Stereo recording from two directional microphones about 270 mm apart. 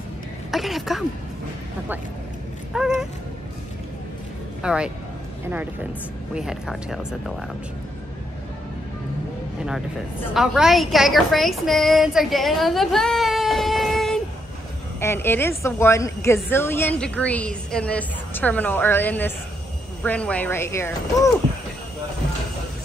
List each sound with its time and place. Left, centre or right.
0.5 s speech: centre
2.7 s speech: centre
4.6 s speech: centre
9.6 s a woman's voice: centre